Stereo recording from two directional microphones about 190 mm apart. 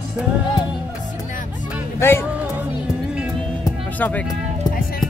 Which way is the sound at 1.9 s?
10° left (ahead or behind).